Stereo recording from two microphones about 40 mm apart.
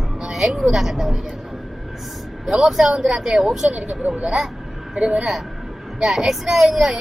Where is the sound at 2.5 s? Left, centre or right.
Centre.